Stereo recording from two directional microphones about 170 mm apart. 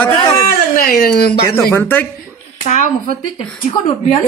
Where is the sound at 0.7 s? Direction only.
65° left (ahead or behind).